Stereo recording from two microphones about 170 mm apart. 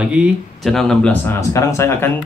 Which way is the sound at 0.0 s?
5° right (ahead or behind).